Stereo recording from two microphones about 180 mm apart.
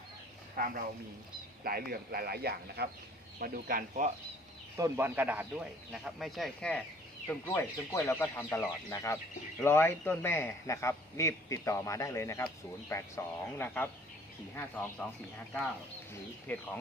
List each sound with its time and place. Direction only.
0.5 s speech: 55° right (ahead or behind)
4.8 s a man's voice: 15° right (ahead or behind); by 15.0 s 10° left (ahead or behind)
16.5 s a man's voice: 10° left (ahead or behind)